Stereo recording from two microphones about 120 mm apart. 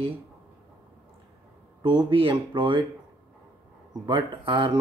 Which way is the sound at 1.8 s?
40° right (ahead or behind).